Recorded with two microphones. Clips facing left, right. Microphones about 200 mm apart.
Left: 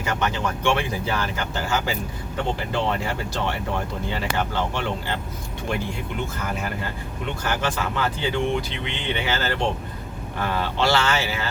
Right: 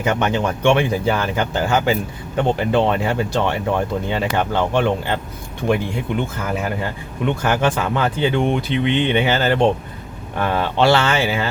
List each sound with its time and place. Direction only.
0.0 s speech: 60° right (ahead or behind)
7.3 s speech: 60° right (ahead or behind)